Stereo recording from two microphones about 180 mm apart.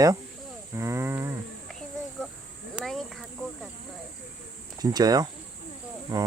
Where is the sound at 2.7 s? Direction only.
Centre (ahead or behind).